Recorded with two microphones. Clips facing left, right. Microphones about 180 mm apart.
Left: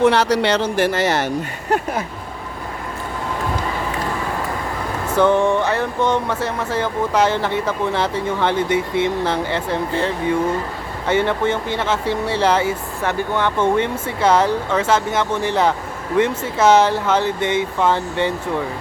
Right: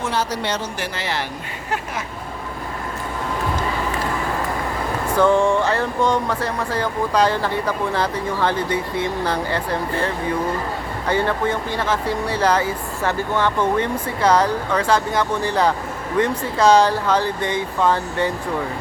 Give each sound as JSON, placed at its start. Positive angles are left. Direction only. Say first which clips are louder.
{"t": 0.0, "sound": "speech", "louder": "left 8 dB", "side_deg": 70}
{"t": 0.8, "sound": "speech", "louder": "left 8 dB", "side_deg": 45}
{"t": 5.1, "sound": "speech", "louder": "left 1 dB", "side_deg": 20}
{"t": 11.1, "sound": "speech", "louder": "left 2 dB", "side_deg": 20}